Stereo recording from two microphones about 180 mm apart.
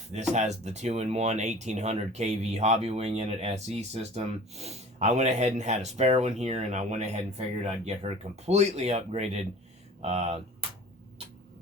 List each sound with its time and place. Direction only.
0.1 s speech: 40° right (ahead or behind)